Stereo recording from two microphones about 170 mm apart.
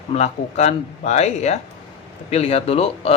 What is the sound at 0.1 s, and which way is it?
Speech, 40° left (ahead or behind).